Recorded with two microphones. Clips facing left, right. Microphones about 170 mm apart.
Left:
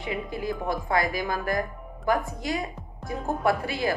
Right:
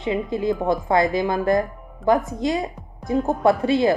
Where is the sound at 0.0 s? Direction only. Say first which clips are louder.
Right 8 dB; 25° right (ahead or behind).